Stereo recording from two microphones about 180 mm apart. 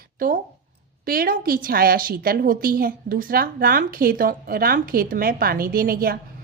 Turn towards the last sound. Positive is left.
turn(degrees=-55)  # may be behind; listen again after turning